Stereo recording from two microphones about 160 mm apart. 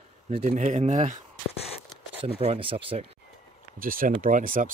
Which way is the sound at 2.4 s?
35° right (ahead or behind).